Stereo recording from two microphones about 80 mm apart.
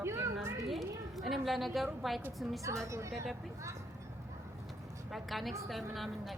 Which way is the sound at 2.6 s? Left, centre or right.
Right.